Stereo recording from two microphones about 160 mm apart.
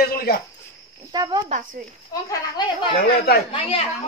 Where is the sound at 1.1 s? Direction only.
25° right (ahead or behind).